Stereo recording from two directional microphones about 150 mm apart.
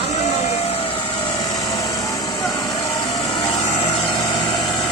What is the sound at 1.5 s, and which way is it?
Vehicle, 25° left (ahead or behind).